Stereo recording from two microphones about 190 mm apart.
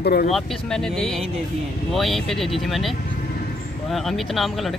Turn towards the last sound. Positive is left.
turn(degrees=0)  # may be behind; listen again after turning